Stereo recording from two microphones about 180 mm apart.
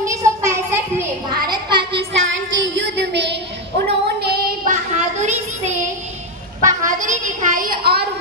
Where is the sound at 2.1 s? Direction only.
90° right; by 3.3 s 70° right (ahead or behind).